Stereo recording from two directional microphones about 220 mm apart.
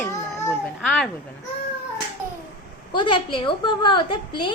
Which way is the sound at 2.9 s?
20° left (ahead or behind).